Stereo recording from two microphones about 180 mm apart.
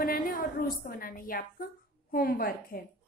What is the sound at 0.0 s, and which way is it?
A woman's voice, 50° left (ahead or behind).